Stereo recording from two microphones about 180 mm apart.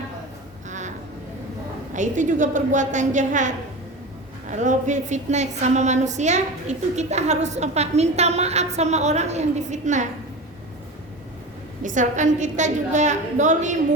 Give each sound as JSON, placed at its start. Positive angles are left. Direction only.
{"t": 1.9, "sound": "a woman's voice", "side_deg": -45}
{"t": 11.8, "sound": "a woman's voice", "side_deg": -45}